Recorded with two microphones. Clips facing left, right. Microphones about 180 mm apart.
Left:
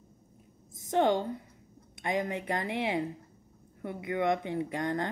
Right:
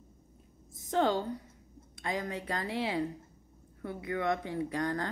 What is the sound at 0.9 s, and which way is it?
Speech, 20° left (ahead or behind).